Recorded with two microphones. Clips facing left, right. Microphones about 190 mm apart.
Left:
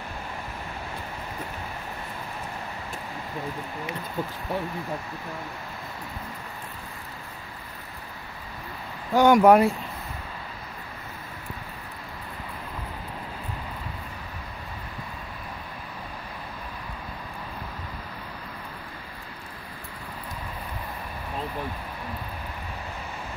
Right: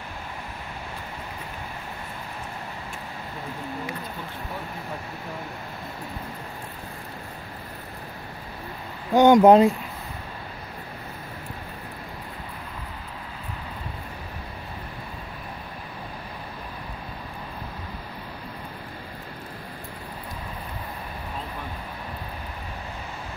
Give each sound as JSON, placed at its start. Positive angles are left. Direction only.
{"t": 9.1, "sound": "speech", "side_deg": -20}